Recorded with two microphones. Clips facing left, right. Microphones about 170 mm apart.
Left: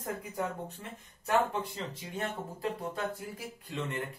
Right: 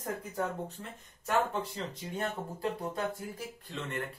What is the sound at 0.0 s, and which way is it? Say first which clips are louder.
Speech: right 1 dB; 10° left (ahead or behind).